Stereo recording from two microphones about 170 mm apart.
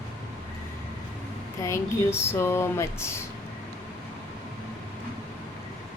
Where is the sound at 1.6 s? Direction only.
15° left (ahead or behind).